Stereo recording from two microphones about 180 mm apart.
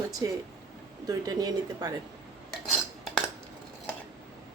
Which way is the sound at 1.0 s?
20° right (ahead or behind).